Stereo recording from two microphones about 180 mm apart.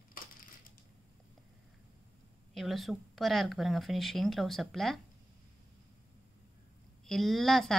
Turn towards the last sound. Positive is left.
turn(degrees=0)  # may be behind; listen again after turning